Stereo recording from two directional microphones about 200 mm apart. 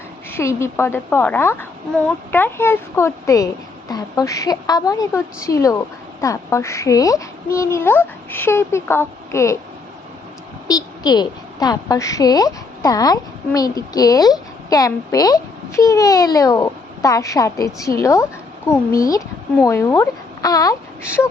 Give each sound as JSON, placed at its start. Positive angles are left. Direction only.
{"t": 0.3, "sound": "a woman's voice", "side_deg": 15}
{"t": 10.7, "sound": "a woman's voice", "side_deg": 20}